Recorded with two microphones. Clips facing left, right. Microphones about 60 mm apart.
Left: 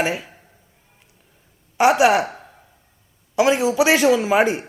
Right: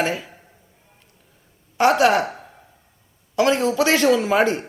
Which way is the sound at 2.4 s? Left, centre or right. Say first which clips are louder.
Right 1 dB; centre.